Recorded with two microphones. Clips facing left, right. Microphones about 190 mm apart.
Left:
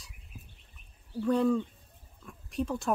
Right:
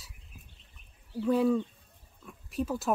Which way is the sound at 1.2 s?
5° right (ahead or behind).